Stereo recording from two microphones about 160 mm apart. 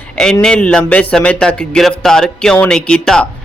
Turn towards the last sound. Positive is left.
turn(degrees=5)  # may be behind; listen again after turning